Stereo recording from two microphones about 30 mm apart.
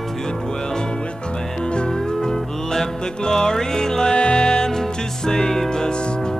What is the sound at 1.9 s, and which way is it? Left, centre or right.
Music, centre.